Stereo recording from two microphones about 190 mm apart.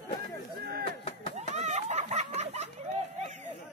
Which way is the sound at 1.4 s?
35° right (ahead or behind).